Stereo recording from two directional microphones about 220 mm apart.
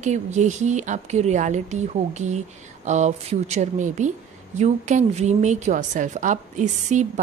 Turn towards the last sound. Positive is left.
turn(degrees=-35)  # may be behind; listen again after turning